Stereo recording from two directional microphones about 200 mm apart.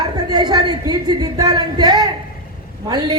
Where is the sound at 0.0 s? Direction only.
20° right (ahead or behind).